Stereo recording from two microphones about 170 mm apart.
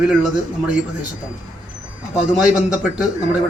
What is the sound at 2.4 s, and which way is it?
Speech, 5° right (ahead or behind).